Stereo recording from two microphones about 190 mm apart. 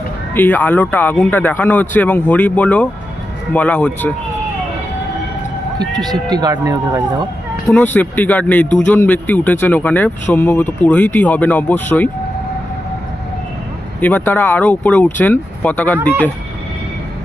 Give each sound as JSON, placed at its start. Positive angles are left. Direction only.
{"t": 0.3, "sound": "speech", "side_deg": 10}
{"t": 6.3, "sound": "speech", "side_deg": -20}
{"t": 7.7, "sound": "speech", "side_deg": 10}
{"t": 14.0, "sound": "speech", "side_deg": 10}